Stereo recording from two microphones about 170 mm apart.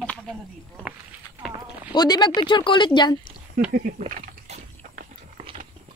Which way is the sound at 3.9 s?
50° right (ahead or behind).